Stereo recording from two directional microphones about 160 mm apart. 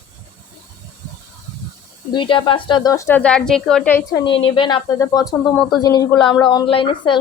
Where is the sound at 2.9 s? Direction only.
15° left (ahead or behind).